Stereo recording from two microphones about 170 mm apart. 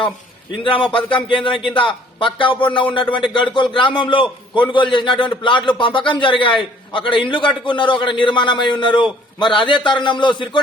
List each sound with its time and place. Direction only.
0.6 s a man's voice: 30° left (ahead or behind)